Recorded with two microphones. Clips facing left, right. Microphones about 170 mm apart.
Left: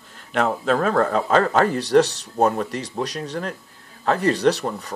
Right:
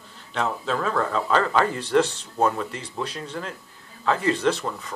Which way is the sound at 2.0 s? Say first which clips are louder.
Left 1 dB; 75° left (ahead or behind).